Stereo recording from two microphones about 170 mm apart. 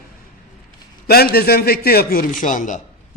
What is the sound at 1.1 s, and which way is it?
A man's voice, 65° left (ahead or behind).